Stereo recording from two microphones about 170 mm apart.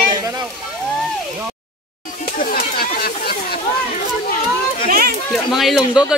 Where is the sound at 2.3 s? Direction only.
60° left (ahead or behind).